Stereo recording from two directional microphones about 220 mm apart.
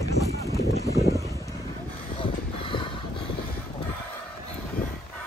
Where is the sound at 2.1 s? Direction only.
25° left (ahead or behind).